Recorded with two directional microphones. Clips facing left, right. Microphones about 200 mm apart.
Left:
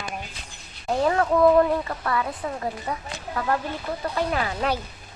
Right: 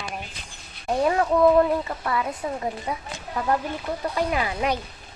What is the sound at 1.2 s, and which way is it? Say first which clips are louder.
Speech: even; centre (ahead or behind).